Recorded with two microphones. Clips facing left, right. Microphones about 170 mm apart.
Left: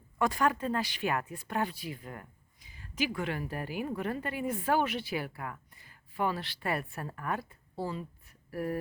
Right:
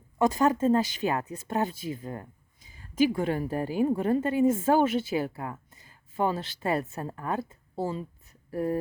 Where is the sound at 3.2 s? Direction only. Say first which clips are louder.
Right 7 dB; 35° right (ahead or behind).